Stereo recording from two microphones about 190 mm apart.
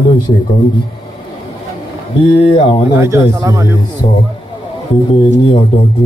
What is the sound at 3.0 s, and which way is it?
Speech, 15° right (ahead or behind).